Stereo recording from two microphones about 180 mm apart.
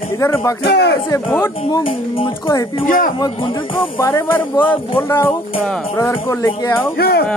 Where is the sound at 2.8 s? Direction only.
50° left (ahead or behind).